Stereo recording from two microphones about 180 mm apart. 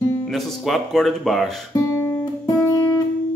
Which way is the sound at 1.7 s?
20° left (ahead or behind).